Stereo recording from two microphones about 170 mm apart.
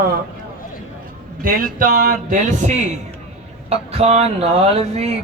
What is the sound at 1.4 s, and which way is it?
A man's voice, 55° right (ahead or behind).